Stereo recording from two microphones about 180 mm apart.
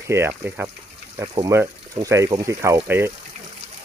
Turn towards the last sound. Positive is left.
turn(degrees=-15)  # may be behind; listen again after turning